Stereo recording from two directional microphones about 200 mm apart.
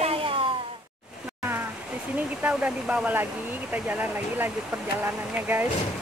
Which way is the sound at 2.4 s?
10° right (ahead or behind).